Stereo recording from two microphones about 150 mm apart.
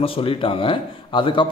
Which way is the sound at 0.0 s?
35° left (ahead or behind).